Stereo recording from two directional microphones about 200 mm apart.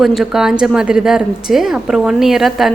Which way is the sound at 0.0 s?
Centre (ahead or behind).